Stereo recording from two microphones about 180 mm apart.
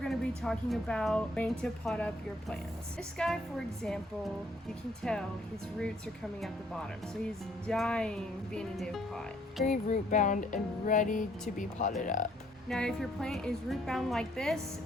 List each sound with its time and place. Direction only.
0.0 s a woman's voice: centre (ahead or behind)
5.0 s a woman's voice: 5° left (ahead or behind)
7.7 s a woman's voice: 5° left (ahead or behind)
9.6 s speech: 45° left (ahead or behind)
12.6 s a woman's voice: 5° left (ahead or behind)